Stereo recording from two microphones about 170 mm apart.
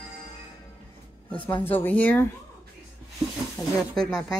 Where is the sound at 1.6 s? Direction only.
10° left (ahead or behind).